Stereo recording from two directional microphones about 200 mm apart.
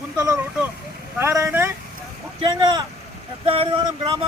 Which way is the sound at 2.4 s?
20° right (ahead or behind).